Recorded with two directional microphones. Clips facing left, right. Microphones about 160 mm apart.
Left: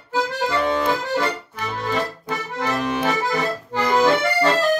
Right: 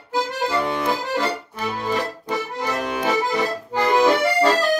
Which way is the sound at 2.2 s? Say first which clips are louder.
Even; 10° right (ahead or behind).